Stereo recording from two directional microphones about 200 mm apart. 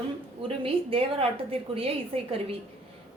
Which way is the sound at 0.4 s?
30° right (ahead or behind).